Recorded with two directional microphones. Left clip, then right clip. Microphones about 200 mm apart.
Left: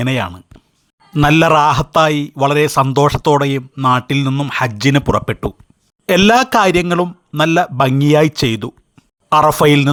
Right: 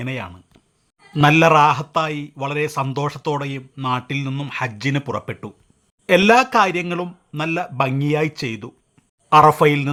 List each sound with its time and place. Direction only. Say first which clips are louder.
0.0 s a man's voice: left 10 dB; 35° left (ahead or behind)